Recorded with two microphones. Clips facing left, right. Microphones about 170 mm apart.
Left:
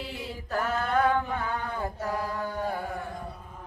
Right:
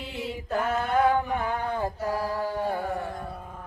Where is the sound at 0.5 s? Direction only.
20° right (ahead or behind).